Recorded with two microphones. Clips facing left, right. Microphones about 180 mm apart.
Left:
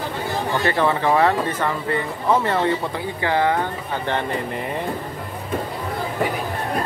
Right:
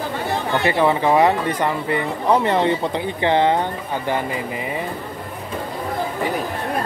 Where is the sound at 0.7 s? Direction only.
15° right (ahead or behind).